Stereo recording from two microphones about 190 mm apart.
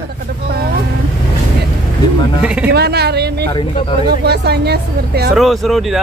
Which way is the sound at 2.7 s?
60° right (ahead or behind).